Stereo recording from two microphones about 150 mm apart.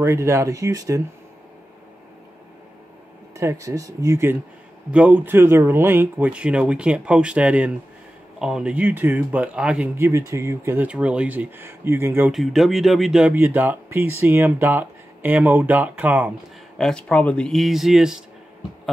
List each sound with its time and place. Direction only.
0.0 s speech: 20° right (ahead or behind)
3.3 s speech: 20° right (ahead or behind)
10.9 s speech: 10° right (ahead or behind)
12.3 s speech: centre (ahead or behind)
16.7 s speech: 5° left (ahead or behind)